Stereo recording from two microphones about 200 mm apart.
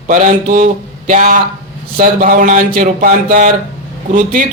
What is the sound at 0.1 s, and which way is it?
A man's voice, 40° right (ahead or behind).